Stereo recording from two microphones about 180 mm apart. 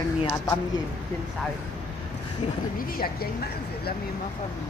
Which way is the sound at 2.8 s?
55° left (ahead or behind).